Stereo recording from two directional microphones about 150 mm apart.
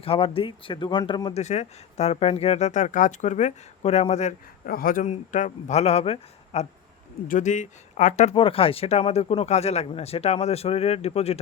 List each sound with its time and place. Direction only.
0.0 s speech: 40° left (ahead or behind)
1.3 s speech: 50° left (ahead or behind)
4.6 s speech: 75° left (ahead or behind)
5.0 s speech: 55° left (ahead or behind)
7.3 s speech: 55° left (ahead or behind)